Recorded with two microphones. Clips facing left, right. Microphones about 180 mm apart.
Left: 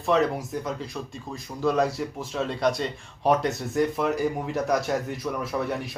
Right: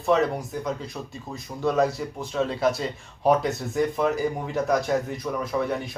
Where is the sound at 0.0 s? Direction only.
Centre (ahead or behind).